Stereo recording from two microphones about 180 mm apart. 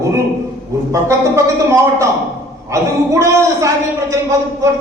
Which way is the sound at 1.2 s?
15° right (ahead or behind).